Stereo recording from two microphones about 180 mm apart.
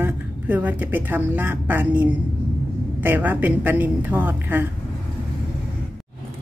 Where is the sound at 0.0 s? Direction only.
10° right (ahead or behind).